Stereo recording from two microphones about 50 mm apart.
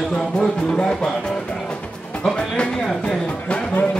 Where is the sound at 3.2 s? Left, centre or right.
Left.